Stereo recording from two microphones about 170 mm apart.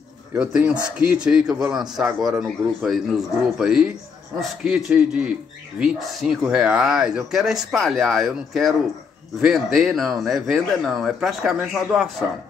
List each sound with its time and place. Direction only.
0.3 s a man's voice: 5° right (ahead or behind)